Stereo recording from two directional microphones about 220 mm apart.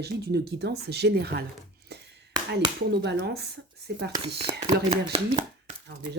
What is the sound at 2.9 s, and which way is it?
Speech, 50° right (ahead or behind).